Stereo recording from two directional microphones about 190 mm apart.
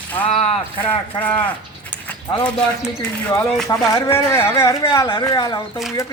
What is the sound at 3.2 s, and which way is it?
Speech, 10° left (ahead or behind).